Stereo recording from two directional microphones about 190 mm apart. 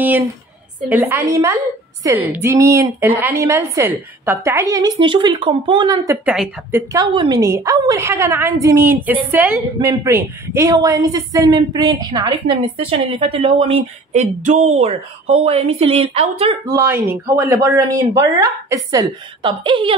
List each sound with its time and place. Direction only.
0.0 s a woman's voice: 10° right (ahead or behind)
6.2 s speech: 5° right (ahead or behind)
6.9 s a woman's voice: 20° right (ahead or behind)
16.6 s a woman's voice: 15° right (ahead or behind)